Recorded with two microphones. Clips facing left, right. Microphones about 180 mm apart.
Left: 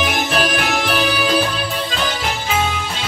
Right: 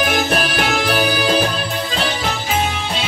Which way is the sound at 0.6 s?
40° right (ahead or behind).